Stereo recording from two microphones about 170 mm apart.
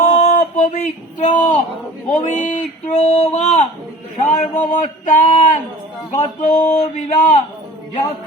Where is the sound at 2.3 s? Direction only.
45° left (ahead or behind).